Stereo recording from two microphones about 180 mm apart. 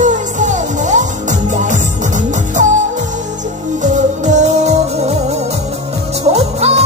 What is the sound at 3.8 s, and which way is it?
Music, 40° right (ahead or behind).